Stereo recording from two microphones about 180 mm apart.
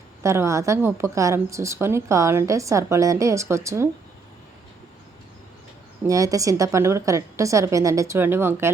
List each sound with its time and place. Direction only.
0.2 s a woman's voice: 15° right (ahead or behind)
6.1 s a woman's voice: 20° right (ahead or behind)